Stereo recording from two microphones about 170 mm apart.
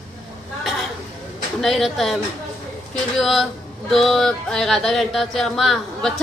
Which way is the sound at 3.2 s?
Centre (ahead or behind).